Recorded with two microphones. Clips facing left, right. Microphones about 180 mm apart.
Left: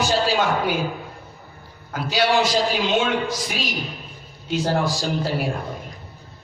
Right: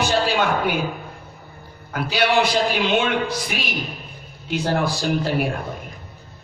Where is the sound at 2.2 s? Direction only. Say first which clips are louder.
Even; 60° right (ahead or behind).